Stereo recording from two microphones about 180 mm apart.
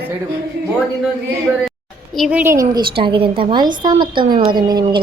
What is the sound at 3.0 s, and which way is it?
A woman's voice, 30° right (ahead or behind).